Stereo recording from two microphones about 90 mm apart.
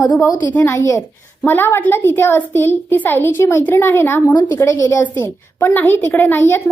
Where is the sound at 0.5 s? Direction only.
30° left (ahead or behind).